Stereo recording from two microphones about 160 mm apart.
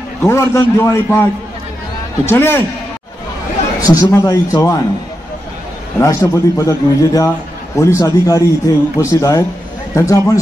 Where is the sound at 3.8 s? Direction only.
25° left (ahead or behind).